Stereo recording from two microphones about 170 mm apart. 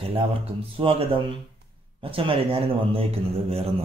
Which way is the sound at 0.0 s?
35° right (ahead or behind).